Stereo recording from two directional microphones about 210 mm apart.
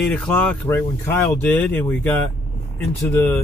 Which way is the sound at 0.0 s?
5° left (ahead or behind).